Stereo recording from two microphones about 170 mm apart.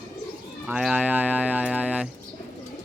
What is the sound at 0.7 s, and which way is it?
Speech, 5° right (ahead or behind).